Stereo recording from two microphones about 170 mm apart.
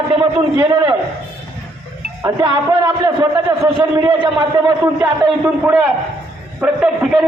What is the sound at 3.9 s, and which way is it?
A man's voice, 25° right (ahead or behind).